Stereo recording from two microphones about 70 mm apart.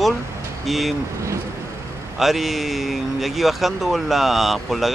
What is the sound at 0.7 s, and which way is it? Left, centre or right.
Speech, centre.